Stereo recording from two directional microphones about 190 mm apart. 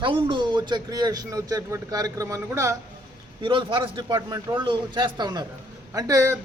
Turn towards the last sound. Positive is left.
turn(degrees=-15)  # may be behind; listen again after turning